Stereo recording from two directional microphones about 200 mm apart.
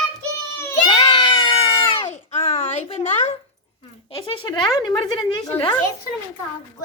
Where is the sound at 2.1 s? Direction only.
35° left (ahead or behind).